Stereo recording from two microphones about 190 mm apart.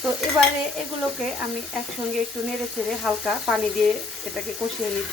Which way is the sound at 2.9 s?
Centre (ahead or behind).